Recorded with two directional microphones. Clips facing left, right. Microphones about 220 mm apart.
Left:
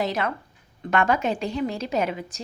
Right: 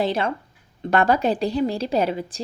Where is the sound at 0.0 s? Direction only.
30° right (ahead or behind).